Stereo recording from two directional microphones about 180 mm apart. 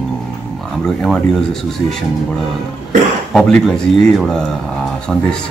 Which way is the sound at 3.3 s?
Centre (ahead or behind).